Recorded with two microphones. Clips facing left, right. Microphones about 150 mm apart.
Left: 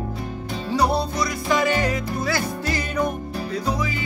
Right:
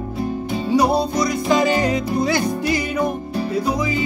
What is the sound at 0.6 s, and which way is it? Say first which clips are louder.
Music: right 4 dB; 15° right (ahead or behind).